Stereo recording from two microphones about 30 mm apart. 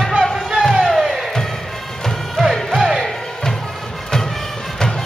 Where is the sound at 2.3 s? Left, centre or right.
Centre.